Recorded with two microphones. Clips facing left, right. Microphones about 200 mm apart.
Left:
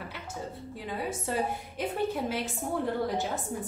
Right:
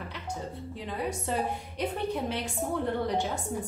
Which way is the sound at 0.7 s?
5° left (ahead or behind).